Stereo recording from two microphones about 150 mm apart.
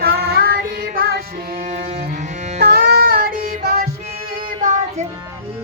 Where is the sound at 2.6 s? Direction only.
90° right.